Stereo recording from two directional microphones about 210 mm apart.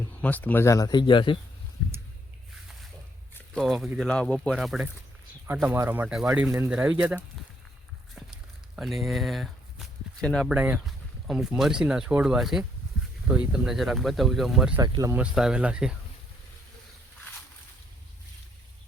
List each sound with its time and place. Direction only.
0.2 s speech: 10° left (ahead or behind); by 1.4 s 25° left (ahead or behind)
3.3 s a sound: 5° left (ahead or behind)
3.9 s speech: 5° left (ahead or behind)
8.1 s speech: centre (ahead or behind)
14.8 s speech: 15° right (ahead or behind)